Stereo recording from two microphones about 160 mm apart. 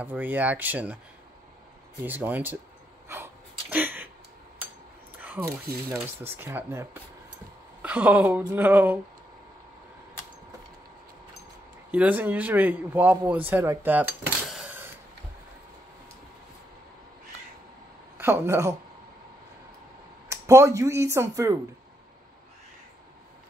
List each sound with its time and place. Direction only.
0.0 s speech: 10° right (ahead or behind)
2.0 s speech: 10° right (ahead or behind)
3.7 s a sound: 10° right (ahead or behind)
5.1 s a sound: 10° right (ahead or behind)
5.9 s speech: 15° right (ahead or behind)
11.9 s speech: 10° right (ahead or behind)
18.1 s speech: 15° right (ahead or behind)
20.2 s speech: 20° right (ahead or behind)